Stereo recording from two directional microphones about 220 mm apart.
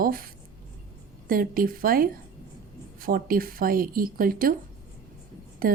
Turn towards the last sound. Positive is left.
turn(degrees=-40)  # may be behind; listen again after turning